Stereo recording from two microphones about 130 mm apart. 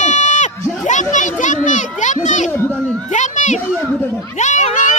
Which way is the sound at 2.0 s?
70° left (ahead or behind).